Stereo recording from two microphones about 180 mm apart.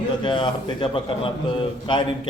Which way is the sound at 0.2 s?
25° left (ahead or behind).